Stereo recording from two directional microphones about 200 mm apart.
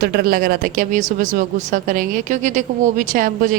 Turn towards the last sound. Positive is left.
turn(degrees=-40)  # may be behind; listen again after turning